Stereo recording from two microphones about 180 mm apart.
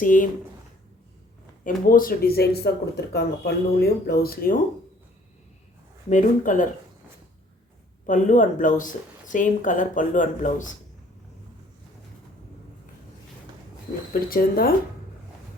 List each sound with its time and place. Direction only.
0.0 s speech: 50° left (ahead or behind)
1.6 s speech: 50° left (ahead or behind)
6.1 s speech: 45° left (ahead or behind)
8.0 s speech: 45° left (ahead or behind)
14.1 s speech: 55° left (ahead or behind)